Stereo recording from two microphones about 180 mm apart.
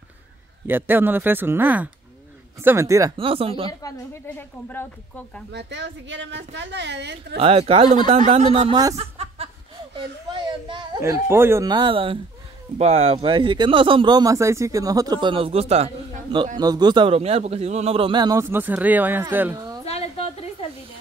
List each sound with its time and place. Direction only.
0.7 s speech: 10° right (ahead or behind)
3.2 s a man's voice: 30° right (ahead or behind)
3.8 s speech: 15° left (ahead or behind)
5.5 s a woman's voice: 75° right (ahead or behind)
7.3 s a man's voice: 30° right (ahead or behind)
8.9 s chuckle: 35° right (ahead or behind)
11.0 s speech: 15° right (ahead or behind)
11.7 s speech: 30° right (ahead or behind); by 19.6 s 10° right (ahead or behind)
19.6 s a sound: 20° right (ahead or behind)